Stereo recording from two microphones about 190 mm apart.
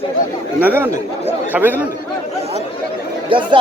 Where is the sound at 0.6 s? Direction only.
10° right (ahead or behind).